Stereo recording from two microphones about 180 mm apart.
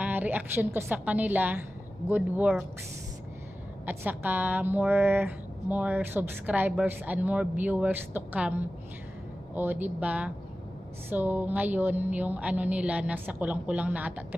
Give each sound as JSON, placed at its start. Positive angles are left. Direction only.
{"t": 0.0, "sound": "a woman's voice", "side_deg": -10}
{"t": 3.8, "sound": "a woman's voice", "side_deg": -10}